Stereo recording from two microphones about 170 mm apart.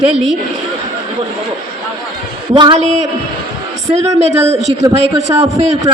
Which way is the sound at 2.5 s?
30° right (ahead or behind).